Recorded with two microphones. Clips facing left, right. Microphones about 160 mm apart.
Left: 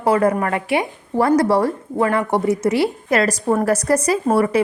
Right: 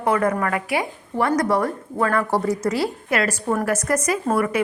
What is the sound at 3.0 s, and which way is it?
A woman's voice, 40° left (ahead or behind).